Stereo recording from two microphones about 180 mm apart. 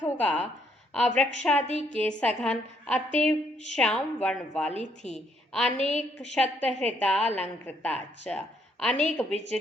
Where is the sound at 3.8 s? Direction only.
5° left (ahead or behind).